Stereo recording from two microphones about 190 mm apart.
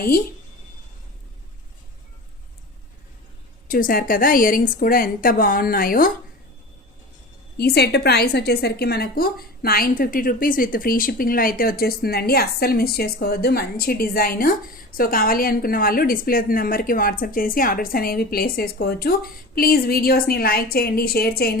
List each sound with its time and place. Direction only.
3.7 s a woman's voice: 45° left (ahead or behind)
7.5 s a woman's voice: 55° left (ahead or behind)